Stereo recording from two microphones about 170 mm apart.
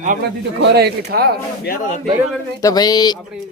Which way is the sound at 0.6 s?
70° right (ahead or behind).